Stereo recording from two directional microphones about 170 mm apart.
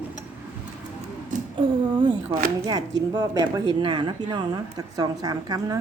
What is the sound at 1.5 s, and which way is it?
A woman's voice, 30° right (ahead or behind).